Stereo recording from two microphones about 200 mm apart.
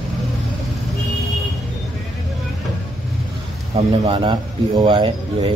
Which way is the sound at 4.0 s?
20° right (ahead or behind).